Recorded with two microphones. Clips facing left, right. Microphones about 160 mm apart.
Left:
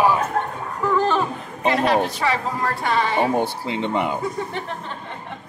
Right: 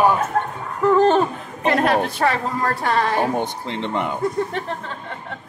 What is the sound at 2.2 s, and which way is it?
Speech, 55° right (ahead or behind).